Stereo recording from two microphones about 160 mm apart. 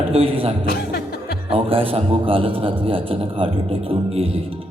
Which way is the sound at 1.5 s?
35° right (ahead or behind).